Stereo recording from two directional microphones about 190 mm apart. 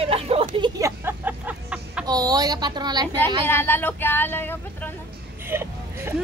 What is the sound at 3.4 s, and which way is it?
Speech, 10° left (ahead or behind).